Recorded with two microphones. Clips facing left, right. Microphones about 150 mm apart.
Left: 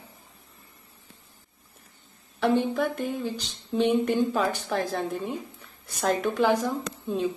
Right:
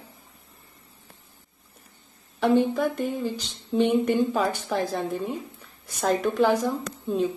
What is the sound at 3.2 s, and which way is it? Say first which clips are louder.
Speech: right 2 dB; centre (ahead or behind).